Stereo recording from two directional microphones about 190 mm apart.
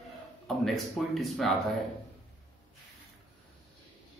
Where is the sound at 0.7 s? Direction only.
Centre (ahead or behind).